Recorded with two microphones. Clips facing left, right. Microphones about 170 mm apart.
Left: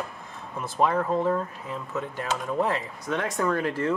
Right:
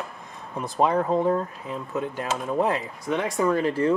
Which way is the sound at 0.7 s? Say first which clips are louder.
Right 2 dB; 20° right (ahead or behind).